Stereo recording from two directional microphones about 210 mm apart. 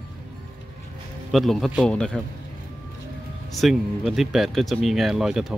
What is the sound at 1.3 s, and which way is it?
Speech, centre (ahead or behind).